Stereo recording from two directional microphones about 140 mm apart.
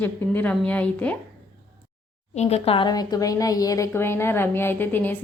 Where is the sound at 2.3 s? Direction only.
50° left (ahead or behind); by 5.1 s 15° left (ahead or behind).